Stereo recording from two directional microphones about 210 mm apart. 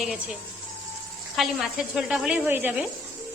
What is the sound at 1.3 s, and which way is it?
A woman's voice, centre (ahead or behind).